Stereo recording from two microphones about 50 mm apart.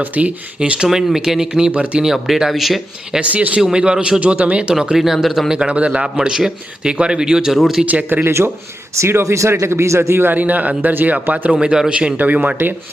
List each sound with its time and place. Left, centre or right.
0.0 s a man's voice: right
0.9 s a man's voice: centre
1.7 s a man's voice: right
2.1 s speech: centre
3.2 s a man's voice: right
3.6 s a man's voice: centre
4.2 s a man's voice: right
4.7 s a man's voice: centre
7.9 s speech: right
8.2 s speech: right
10.3 s speech: right
11.6 s a man's voice: centre